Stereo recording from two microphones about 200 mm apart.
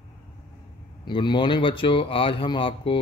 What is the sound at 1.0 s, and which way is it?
A man's voice, 25° left (ahead or behind).